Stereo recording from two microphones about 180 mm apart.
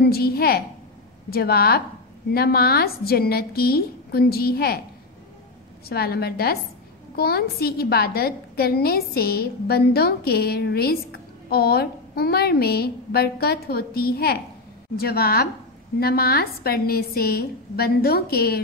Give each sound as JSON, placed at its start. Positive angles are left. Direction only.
{"t": 0.0, "sound": "a woman's voice", "side_deg": 60}
{"t": 5.9, "sound": "a woman's voice", "side_deg": 60}